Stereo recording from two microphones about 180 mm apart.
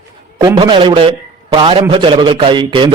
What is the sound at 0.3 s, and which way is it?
A man's voice, 25° right (ahead or behind).